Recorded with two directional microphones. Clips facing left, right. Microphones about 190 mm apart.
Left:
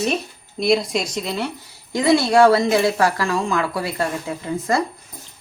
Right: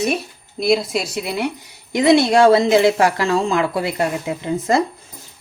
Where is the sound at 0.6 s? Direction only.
Centre (ahead or behind).